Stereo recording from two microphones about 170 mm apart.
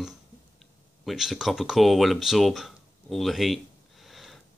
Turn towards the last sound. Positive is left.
turn(degrees=0)  # may be behind; listen again after turning